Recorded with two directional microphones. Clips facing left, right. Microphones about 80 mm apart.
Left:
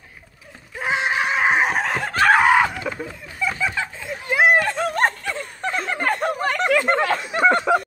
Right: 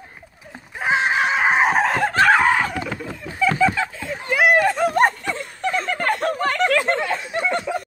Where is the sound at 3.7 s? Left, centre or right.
Centre.